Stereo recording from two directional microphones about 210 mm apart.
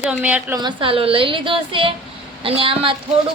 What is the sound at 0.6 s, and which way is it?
A woman's voice, 20° right (ahead or behind).